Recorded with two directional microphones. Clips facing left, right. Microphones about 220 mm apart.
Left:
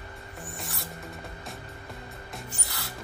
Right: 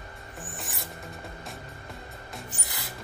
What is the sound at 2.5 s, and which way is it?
Music, 15° right (ahead or behind).